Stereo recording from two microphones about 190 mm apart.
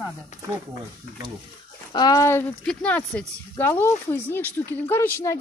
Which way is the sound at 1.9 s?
20° left (ahead or behind).